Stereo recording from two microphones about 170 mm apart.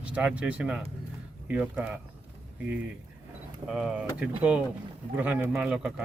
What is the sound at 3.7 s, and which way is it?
Speech, 5° right (ahead or behind).